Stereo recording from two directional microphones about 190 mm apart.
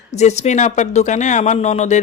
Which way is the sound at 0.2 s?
35° left (ahead or behind).